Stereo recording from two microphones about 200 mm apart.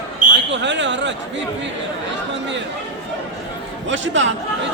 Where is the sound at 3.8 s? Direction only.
70° right (ahead or behind).